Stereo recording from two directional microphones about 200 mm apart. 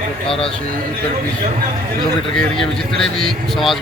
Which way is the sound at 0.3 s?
25° left (ahead or behind).